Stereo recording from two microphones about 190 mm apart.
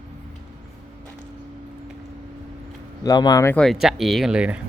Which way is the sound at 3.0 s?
20° left (ahead or behind).